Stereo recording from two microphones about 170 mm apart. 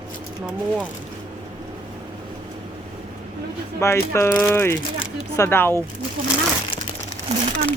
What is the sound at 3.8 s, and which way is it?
Speech, 15° left (ahead or behind).